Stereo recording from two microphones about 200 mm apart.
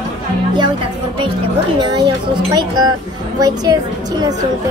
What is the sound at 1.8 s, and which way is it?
A woman's voice, 20° right (ahead or behind).